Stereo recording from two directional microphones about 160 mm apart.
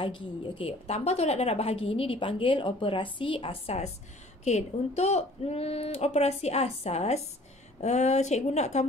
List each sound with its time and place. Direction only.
0.0 s a woman's voice: 35° left (ahead or behind)